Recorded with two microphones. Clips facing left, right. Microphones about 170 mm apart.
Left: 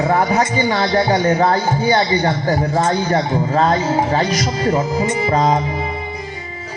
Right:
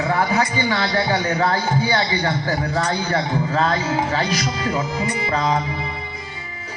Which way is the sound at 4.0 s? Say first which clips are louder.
Left 4 dB; 45° left (ahead or behind).